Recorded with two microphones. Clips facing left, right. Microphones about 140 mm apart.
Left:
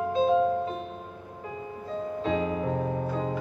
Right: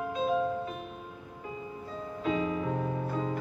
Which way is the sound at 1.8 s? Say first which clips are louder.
Left 4 dB; 30° left (ahead or behind).